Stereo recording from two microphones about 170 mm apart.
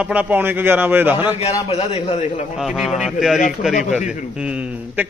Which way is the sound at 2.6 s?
5° right (ahead or behind).